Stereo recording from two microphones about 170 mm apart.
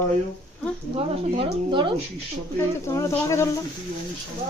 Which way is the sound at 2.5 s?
15° left (ahead or behind).